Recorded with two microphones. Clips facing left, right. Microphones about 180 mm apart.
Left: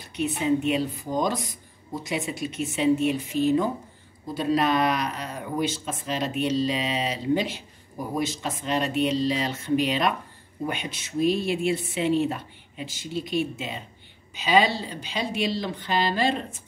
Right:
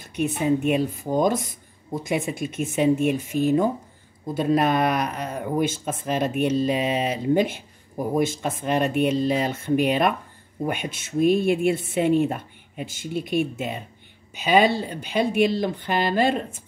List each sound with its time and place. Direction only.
0.0 s speech: 50° right (ahead or behind)